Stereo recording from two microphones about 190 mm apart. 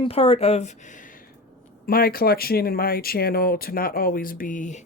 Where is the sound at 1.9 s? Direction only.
50° left (ahead or behind).